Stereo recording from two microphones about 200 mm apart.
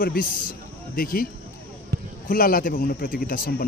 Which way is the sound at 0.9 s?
45° left (ahead or behind).